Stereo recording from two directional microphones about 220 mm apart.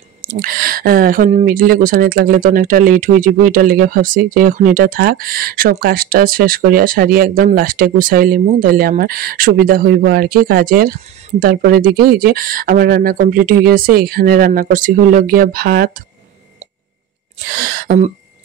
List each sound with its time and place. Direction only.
0.2 s speech: 40° right (ahead or behind)
17.5 s speech: 40° right (ahead or behind)